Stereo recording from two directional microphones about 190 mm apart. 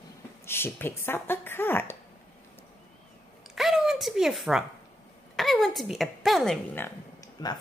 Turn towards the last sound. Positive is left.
turn(degrees=20)  # may be behind; listen again after turning